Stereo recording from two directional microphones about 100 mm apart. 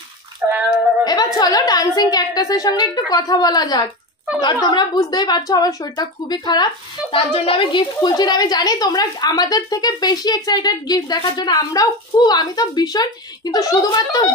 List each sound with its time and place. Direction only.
0.4 s a sound: 15° right (ahead or behind)
1.0 s a woman's voice: 40° left (ahead or behind)
7.2 s speech: 65° left (ahead or behind)
8.0 s speech: 45° left (ahead or behind)